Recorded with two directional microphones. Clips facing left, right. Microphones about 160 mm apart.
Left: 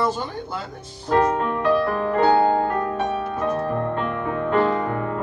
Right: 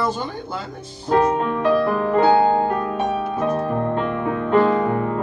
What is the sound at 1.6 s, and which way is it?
Music, 20° right (ahead or behind).